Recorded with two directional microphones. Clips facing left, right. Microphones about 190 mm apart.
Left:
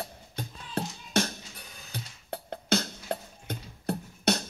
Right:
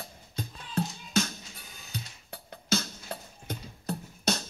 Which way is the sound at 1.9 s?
60° left (ahead or behind).